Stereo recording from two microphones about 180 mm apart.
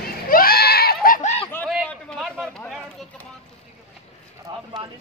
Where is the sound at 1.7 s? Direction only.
Centre (ahead or behind).